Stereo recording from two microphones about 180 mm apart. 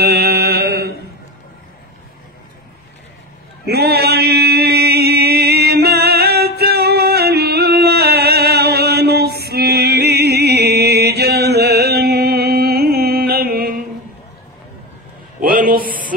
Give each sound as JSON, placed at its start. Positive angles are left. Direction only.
{"t": 0.0, "sound": "mantra", "side_deg": -60}
{"t": 3.6, "sound": "chant", "side_deg": -65}
{"t": 9.4, "sound": "mantra", "side_deg": -60}
{"t": 15.4, "sound": "a sound", "side_deg": -55}